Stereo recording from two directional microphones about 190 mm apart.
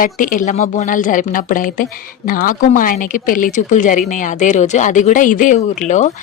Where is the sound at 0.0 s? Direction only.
45° left (ahead or behind).